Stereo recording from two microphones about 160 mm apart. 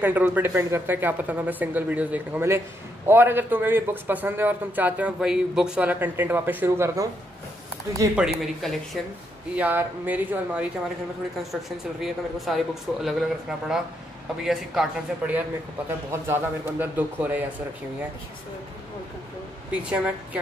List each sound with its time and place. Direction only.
0.0 s a man's voice: 10° right (ahead or behind)
8.4 s speech: centre (ahead or behind)
9.6 s a man's voice: 10° right (ahead or behind)
12.0 s a man's voice: centre (ahead or behind)
19.7 s a man's voice: 5° right (ahead or behind)